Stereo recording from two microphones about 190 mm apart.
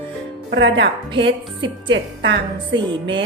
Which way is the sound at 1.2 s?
25° right (ahead or behind).